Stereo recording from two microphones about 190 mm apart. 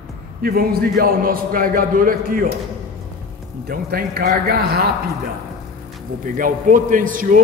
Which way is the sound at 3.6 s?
55° right (ahead or behind).